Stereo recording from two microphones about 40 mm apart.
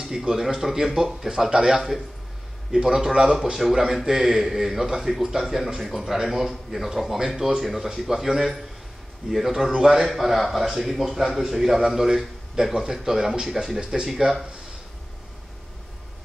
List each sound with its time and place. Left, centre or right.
0.3 s a man's voice: centre